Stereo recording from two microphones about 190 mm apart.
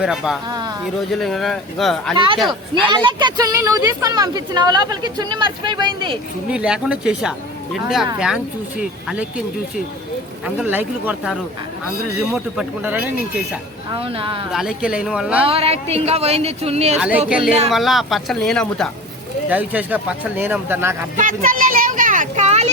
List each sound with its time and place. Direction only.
0.0 s speech: 5° right (ahead or behind)
2.1 s a woman's voice: 25° right (ahead or behind)
6.5 s speech: 5° right (ahead or behind)
10.4 s speech: 10° right (ahead or behind)
14.0 s a woman's voice: 30° right (ahead or behind)
14.5 s speech: 5° right (ahead or behind)
15.4 s a woman's voice: 30° right (ahead or behind)
17.0 s speech: 5° right (ahead or behind)
19.5 s speech: 10° right (ahead or behind)
21.2 s speech: 45° right (ahead or behind)